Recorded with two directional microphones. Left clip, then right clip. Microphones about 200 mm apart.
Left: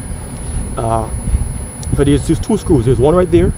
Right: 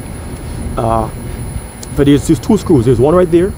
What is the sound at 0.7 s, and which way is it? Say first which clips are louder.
Speech: right 3 dB; 10° right (ahead or behind).